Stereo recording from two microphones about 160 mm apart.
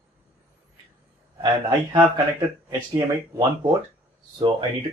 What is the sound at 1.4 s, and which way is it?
Speech, 25° right (ahead or behind).